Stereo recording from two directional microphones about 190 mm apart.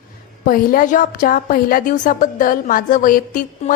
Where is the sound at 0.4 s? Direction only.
50° left (ahead or behind).